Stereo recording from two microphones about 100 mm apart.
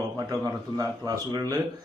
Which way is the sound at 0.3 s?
35° right (ahead or behind).